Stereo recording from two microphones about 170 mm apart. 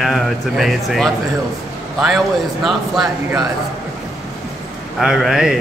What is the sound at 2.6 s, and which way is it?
Speech, centre (ahead or behind).